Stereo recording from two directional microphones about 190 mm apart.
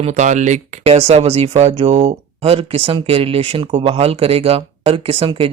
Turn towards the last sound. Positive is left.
turn(degrees=-30)  # may be behind; listen again after turning